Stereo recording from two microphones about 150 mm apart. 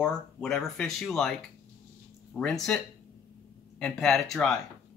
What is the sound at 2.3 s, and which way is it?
Speech, 5° left (ahead or behind).